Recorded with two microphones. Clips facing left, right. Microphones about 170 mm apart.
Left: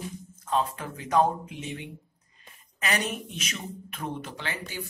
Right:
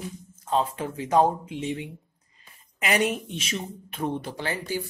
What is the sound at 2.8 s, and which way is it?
Speech, 25° right (ahead or behind).